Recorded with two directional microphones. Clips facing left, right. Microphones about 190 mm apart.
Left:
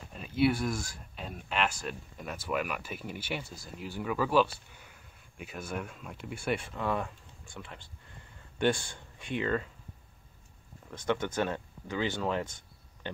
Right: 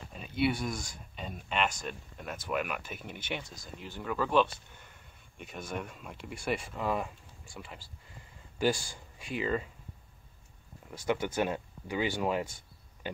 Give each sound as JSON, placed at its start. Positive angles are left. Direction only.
{"t": 0.1, "sound": "speech", "side_deg": 0}
{"t": 10.9, "sound": "speech", "side_deg": -10}